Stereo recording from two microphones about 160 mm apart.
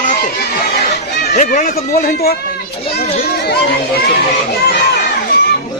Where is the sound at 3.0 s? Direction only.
80° left.